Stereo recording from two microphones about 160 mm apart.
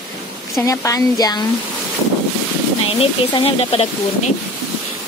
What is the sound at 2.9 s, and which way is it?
Speech, 35° left (ahead or behind).